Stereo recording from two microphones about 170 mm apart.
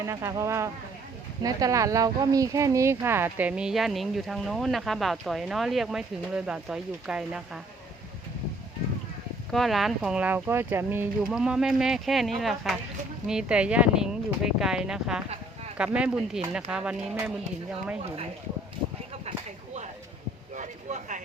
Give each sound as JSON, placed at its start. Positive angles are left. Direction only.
{"t": 0.0, "sound": "speech", "side_deg": -15}
{"t": 9.5, "sound": "speech", "side_deg": 0}
{"t": 20.6, "sound": "a sound", "side_deg": -45}